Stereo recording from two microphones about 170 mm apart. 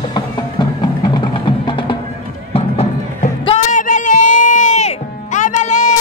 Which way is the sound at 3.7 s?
50° left (ahead or behind).